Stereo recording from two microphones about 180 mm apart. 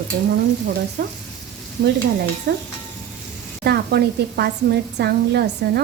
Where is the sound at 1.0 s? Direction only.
60° right (ahead or behind).